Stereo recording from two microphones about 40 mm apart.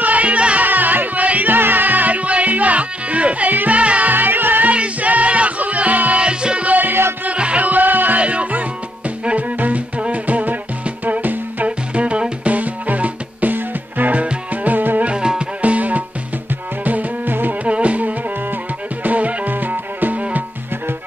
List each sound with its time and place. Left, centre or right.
0.0 s music: right
0.7 s music: right
4.1 s music: right
4.6 s music: right
6.7 s music: right
7.2 s music: right
8.2 s music: right
15.0 s music: right
15.6 s music: right
17.6 s music: right